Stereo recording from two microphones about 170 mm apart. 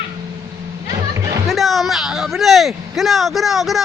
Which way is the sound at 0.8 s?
20° right (ahead or behind).